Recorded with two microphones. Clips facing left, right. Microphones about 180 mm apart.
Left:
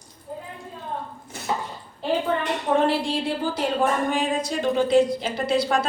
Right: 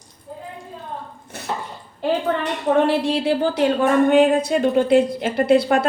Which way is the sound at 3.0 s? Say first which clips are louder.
Right 6 dB; 70° right (ahead or behind).